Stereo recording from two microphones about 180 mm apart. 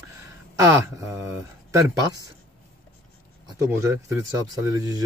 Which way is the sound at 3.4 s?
15° right (ahead or behind).